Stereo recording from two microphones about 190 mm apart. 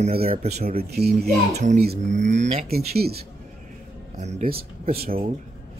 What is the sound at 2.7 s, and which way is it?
Speech, 55° right (ahead or behind).